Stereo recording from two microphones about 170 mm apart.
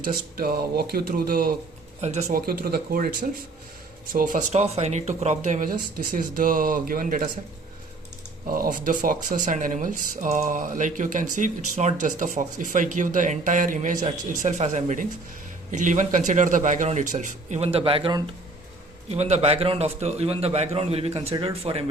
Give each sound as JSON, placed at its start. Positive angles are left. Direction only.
{"t": 0.0, "sound": "speech", "side_deg": -60}
{"t": 2.0, "sound": "a man's voice", "side_deg": -40}
{"t": 2.3, "sound": "speech", "side_deg": -60}
{"t": 8.5, "sound": "a man's voice", "side_deg": -55}